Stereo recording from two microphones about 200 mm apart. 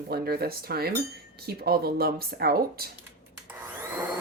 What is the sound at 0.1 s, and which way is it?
Speech, 50° right (ahead or behind).